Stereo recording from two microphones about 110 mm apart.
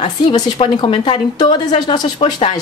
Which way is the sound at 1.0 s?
45° left (ahead or behind).